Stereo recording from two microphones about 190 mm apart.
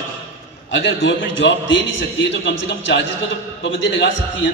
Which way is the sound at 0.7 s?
80° left.